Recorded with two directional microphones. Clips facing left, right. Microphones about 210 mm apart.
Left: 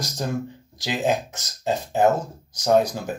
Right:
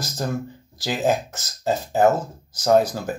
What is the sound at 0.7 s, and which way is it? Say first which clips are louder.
Speech: right 2 dB; 5° right (ahead or behind).